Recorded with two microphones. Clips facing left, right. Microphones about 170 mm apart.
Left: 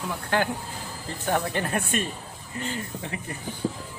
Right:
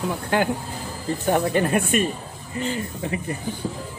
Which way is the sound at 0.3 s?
15° right (ahead or behind).